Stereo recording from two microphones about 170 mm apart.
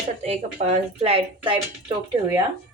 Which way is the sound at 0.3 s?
40° right (ahead or behind).